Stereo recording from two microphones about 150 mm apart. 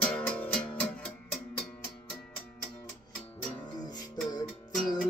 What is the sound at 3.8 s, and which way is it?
Music, 25° left (ahead or behind).